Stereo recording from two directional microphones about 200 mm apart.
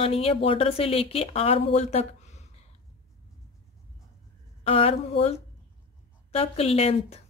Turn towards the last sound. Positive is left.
turn(degrees=30)  # may be behind; listen again after turning